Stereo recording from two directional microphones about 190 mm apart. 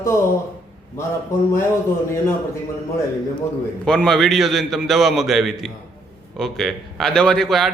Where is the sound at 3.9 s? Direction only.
5° left (ahead or behind).